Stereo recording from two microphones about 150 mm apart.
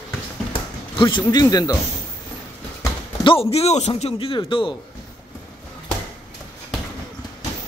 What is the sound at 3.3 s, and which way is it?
Speech, 40° left (ahead or behind).